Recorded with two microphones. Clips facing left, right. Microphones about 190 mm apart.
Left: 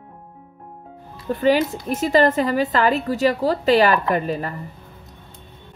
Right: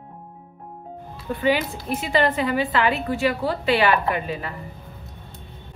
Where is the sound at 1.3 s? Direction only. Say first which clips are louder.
Left 4 dB; 40° left (ahead or behind).